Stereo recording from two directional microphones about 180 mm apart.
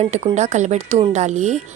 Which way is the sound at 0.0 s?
35° right (ahead or behind).